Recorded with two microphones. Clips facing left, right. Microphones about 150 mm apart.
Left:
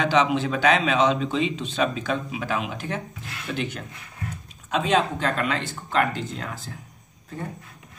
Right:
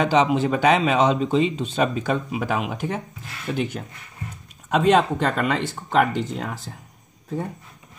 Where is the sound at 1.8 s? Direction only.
55° right (ahead or behind).